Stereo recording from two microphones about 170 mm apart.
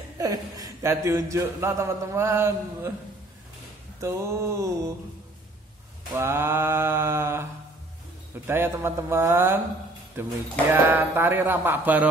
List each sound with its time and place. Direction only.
0.2 s speech: 20° right (ahead or behind)
4.0 s speech: 15° right (ahead or behind)
6.1 s speech: 15° right (ahead or behind)
8.5 s speech: 15° right (ahead or behind)